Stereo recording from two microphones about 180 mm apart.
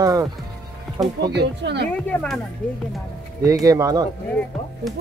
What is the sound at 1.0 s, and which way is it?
Speech, centre (ahead or behind).